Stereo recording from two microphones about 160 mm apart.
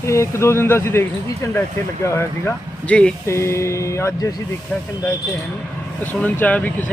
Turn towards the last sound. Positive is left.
turn(degrees=10)  # may be behind; listen again after turning